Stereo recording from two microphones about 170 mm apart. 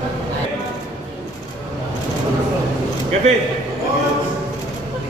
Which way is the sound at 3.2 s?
40° right (ahead or behind).